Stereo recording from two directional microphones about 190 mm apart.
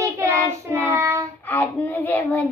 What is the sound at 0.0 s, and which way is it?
Child singing, 15° right (ahead or behind).